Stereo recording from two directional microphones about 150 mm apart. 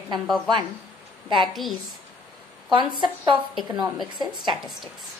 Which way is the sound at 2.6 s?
30° right (ahead or behind).